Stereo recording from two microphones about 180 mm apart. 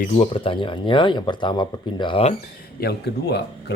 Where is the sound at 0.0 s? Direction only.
35° left (ahead or behind).